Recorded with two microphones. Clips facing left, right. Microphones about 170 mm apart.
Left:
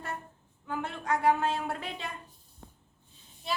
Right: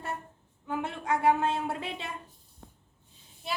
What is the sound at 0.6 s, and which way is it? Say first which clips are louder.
A woman's voice: right 2 dB; 25° right (ahead or behind).